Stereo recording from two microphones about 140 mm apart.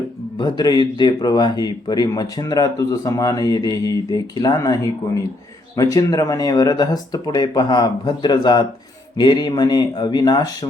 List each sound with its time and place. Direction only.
0.3 s speech: 30° left (ahead or behind)